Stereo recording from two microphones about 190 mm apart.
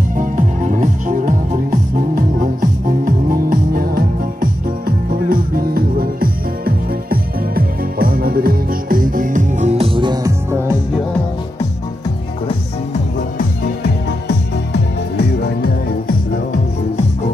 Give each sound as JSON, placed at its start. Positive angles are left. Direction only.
{"t": 0.2, "sound": "music", "side_deg": -40}
{"t": 14.2, "sound": "music", "side_deg": 60}